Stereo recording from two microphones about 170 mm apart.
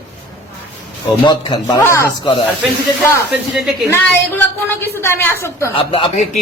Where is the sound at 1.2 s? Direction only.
25° left (ahead or behind).